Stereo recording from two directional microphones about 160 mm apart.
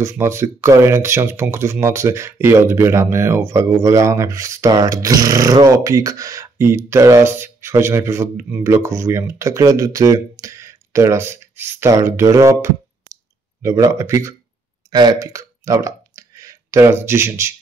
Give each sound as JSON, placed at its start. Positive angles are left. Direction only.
{"t": 0.0, "sound": "speech", "side_deg": -15}